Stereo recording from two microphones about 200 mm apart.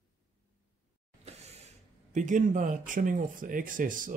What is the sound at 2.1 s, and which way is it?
Speech, 40° right (ahead or behind).